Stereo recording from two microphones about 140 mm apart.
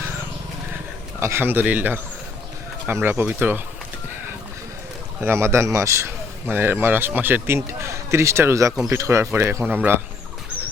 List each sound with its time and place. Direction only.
1.2 s a man's voice: 20° right (ahead or behind)
5.2 s a man's voice: 20° right (ahead or behind)